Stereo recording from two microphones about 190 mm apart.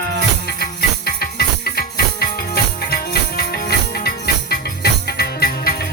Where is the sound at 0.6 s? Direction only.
55° left (ahead or behind).